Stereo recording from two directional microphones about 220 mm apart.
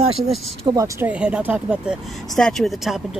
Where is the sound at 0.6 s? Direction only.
15° right (ahead or behind).